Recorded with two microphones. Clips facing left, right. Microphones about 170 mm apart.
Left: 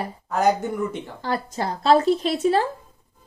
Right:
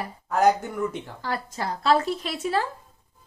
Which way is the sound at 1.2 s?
25° left (ahead or behind).